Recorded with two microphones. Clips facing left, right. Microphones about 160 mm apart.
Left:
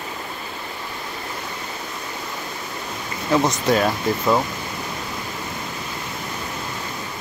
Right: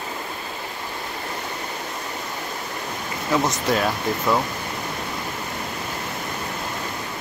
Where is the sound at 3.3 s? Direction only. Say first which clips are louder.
Left 3 dB; centre (ahead or behind).